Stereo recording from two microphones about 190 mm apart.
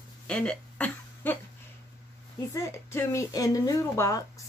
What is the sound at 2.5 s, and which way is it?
Speech, 15° left (ahead or behind).